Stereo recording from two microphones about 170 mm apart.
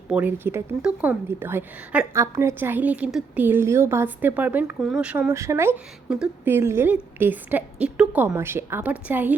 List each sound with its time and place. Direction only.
0.1 s a woman's voice: 10° right (ahead or behind)